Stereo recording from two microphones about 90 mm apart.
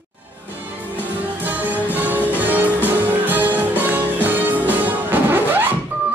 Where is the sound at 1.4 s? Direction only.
20° right (ahead or behind).